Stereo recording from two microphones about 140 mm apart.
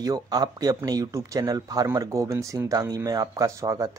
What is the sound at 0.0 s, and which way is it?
Speech, 25° right (ahead or behind).